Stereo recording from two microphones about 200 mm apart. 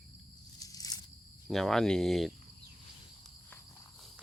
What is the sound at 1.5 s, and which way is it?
Cricket, centre (ahead or behind).